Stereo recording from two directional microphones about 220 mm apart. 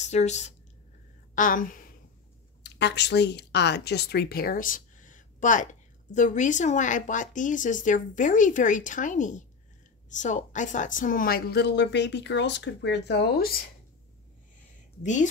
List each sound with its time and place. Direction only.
0.0 s a woman's voice: 30° left (ahead or behind)
2.6 s speech: 50° left (ahead or behind)